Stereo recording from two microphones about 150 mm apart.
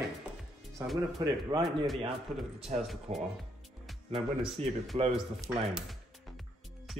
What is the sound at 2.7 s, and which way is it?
Speech, 50° right (ahead or behind).